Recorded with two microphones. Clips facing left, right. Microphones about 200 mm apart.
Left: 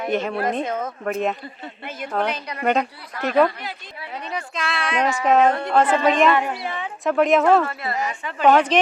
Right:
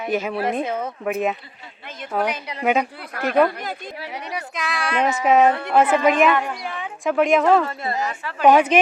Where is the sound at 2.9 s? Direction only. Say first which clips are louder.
Even; 55° right (ahead or behind).